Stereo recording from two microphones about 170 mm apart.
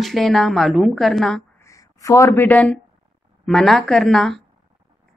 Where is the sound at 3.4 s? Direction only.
Centre (ahead or behind).